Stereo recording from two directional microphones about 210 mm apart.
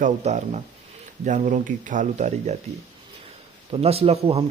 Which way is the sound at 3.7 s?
30° right (ahead or behind).